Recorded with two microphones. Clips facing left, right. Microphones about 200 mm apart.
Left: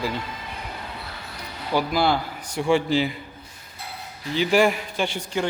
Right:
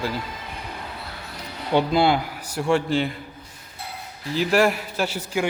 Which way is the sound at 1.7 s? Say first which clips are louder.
Right 3 dB; 25° right (ahead or behind).